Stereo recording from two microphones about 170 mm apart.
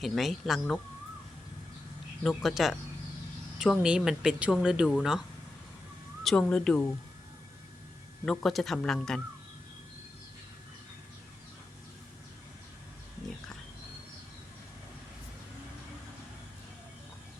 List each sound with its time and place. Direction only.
0.0 s speech: centre (ahead or behind)
2.2 s speech: centre (ahead or behind)
6.2 s speech: 5° left (ahead or behind)
8.2 s speech: 5° left (ahead or behind)